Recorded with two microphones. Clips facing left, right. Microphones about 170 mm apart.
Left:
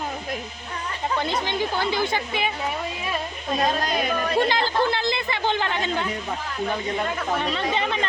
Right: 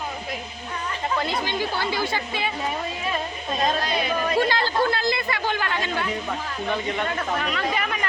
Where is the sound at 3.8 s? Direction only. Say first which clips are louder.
Left 1 dB; 45° left (ahead or behind).